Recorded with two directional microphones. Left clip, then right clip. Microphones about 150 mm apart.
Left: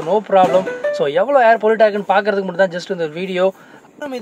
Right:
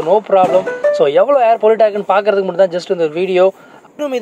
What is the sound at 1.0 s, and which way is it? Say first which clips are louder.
A man's voice: right 2 dB; 5° right (ahead or behind).